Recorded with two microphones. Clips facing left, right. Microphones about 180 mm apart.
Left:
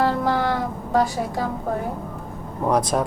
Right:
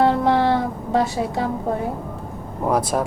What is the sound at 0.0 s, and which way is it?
Music, 25° right (ahead or behind).